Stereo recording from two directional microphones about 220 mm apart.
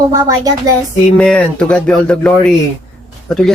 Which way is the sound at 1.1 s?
5° left (ahead or behind).